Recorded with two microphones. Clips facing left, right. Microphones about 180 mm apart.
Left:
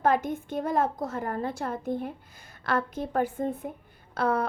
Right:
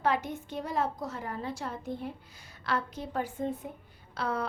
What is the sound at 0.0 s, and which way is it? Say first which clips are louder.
A woman's voice: left 5 dB; 50° left (ahead or behind).